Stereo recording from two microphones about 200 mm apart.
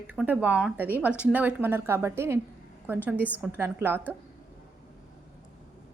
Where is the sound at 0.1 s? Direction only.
10° right (ahead or behind).